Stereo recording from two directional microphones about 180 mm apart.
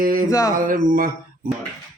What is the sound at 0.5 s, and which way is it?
Speech, 50° right (ahead or behind).